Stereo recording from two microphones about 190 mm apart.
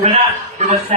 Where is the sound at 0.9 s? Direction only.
35° right (ahead or behind).